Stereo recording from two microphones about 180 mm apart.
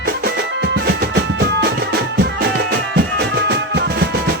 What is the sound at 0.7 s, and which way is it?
Drum, 60° right (ahead or behind).